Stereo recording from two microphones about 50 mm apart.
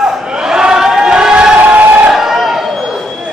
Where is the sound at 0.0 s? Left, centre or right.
Centre; by 2.0 s right.